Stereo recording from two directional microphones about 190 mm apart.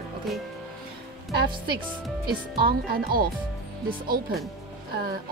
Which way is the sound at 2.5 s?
50° right (ahead or behind).